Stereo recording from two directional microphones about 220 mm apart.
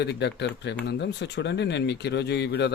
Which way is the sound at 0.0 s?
50° left (ahead or behind).